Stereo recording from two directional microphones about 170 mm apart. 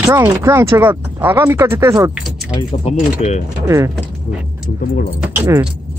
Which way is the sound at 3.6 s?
20° right (ahead or behind).